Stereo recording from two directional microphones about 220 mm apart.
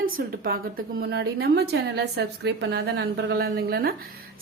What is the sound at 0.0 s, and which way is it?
A woman's voice, 40° right (ahead or behind).